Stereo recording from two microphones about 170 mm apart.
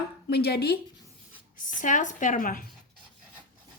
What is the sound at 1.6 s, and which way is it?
Speech, 50° left (ahead or behind).